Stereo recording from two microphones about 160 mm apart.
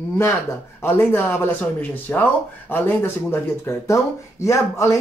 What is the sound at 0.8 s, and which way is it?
Speech, 15° left (ahead or behind).